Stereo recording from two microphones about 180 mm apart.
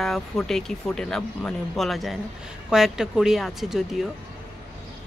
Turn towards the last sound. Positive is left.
turn(degrees=0)  # may be behind; listen again after turning